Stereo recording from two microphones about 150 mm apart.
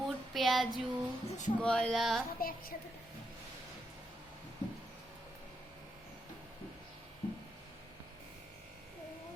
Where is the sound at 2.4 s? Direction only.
75° left (ahead or behind).